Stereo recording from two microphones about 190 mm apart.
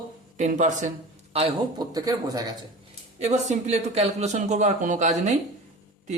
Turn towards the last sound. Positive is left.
turn(degrees=-40)  # may be behind; listen again after turning